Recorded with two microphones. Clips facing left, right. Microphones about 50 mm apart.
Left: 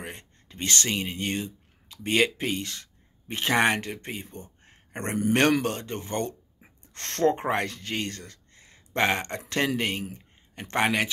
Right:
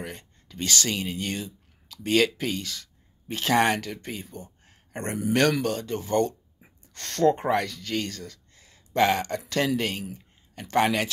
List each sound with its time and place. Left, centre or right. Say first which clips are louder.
0.2 s a man's voice: right 1 dB; left